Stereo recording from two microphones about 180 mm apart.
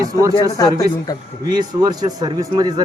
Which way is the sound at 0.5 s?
20° left (ahead or behind).